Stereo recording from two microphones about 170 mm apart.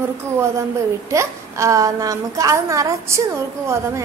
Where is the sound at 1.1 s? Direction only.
15° right (ahead or behind).